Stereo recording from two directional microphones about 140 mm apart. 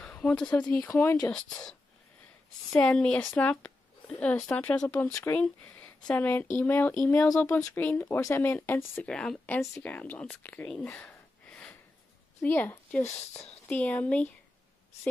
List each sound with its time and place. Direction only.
0.0 s speech: 10° left (ahead or behind)
2.8 s speech: 5° left (ahead or behind)
9.1 s a woman's voice: 5° left (ahead or behind)